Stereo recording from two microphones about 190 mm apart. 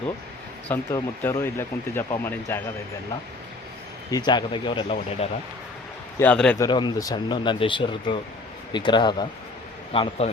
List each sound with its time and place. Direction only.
0.7 s speech: 10° left (ahead or behind)
4.1 s speech: 25° left (ahead or behind)
6.1 s speech: 5° left (ahead or behind)
6.6 s speech: 25° left (ahead or behind)